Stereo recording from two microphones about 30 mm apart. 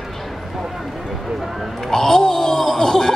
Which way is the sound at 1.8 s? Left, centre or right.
Centre.